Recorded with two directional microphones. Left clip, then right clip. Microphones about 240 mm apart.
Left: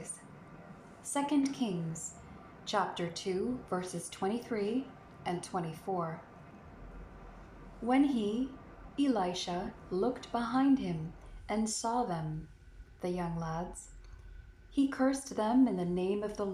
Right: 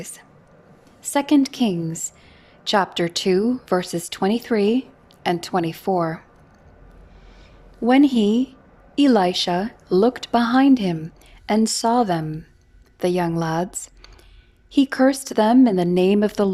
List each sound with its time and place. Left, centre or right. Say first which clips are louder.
1.0 s a woman's voice: right 13 dB; right
7.9 s a woman's voice: right 14 dB; right
14.8 s speech: right 13 dB; right